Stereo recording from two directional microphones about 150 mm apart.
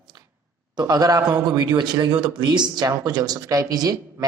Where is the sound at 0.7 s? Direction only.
25° right (ahead or behind).